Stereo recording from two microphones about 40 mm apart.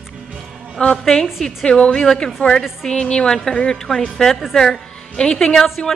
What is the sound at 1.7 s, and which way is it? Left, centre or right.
A woman's voice, left.